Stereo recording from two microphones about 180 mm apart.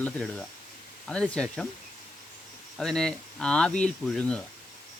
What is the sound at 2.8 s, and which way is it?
Speech, 5° left (ahead or behind).